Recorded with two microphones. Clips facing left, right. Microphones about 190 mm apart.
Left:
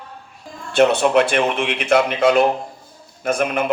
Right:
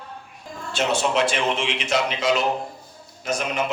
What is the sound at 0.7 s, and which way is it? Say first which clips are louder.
Speech: left 8 dB; 60° left (ahead or behind).